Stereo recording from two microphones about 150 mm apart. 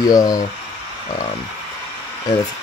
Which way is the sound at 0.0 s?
25° left (ahead or behind).